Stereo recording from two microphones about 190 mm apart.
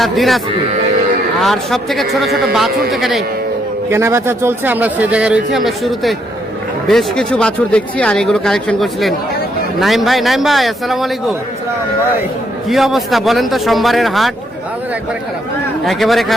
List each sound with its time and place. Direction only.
0.0 s speech: centre (ahead or behind)
3.8 s speech: 15° right (ahead or behind)
12.6 s speech: centre (ahead or behind)
15.9 s speech: centre (ahead or behind)